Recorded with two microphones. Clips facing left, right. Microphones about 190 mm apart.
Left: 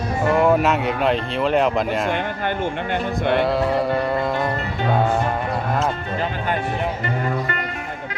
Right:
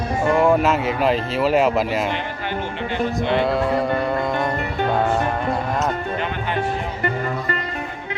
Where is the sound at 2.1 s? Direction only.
50° left (ahead or behind).